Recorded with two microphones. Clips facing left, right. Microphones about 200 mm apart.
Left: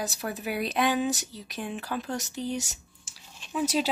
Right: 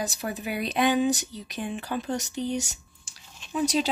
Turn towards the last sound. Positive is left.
turn(degrees=5)  # may be behind; listen again after turning